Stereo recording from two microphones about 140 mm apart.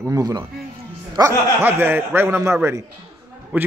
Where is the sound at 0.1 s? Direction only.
25° right (ahead or behind).